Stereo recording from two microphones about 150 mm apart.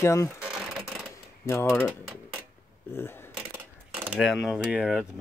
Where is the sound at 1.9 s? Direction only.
10° right (ahead or behind).